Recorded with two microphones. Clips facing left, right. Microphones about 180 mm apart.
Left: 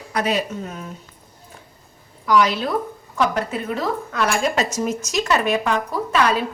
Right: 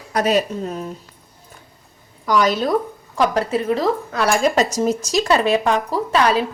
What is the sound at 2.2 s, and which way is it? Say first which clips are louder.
A woman's voice: right 1 dB; 40° right (ahead or behind).